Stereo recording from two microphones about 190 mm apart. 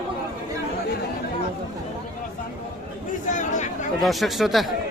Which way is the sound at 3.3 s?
40° left (ahead or behind).